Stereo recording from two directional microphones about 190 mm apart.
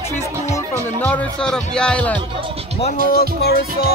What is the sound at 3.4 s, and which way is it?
Music, 55° left (ahead or behind).